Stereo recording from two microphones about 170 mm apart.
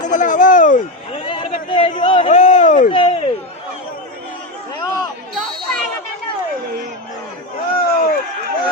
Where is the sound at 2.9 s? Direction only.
30° left (ahead or behind).